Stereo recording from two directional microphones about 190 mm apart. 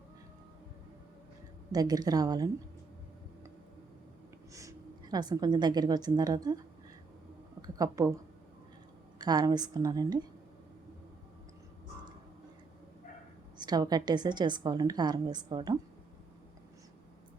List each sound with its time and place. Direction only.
1.7 s a woman's voice: 20° right (ahead or behind)
4.5 s a woman's voice: 20° right (ahead or behind)
7.8 s a woman's voice: 20° right (ahead or behind)
9.1 s a woman's voice: 20° right (ahead or behind)
13.6 s a woman's voice: 20° right (ahead or behind)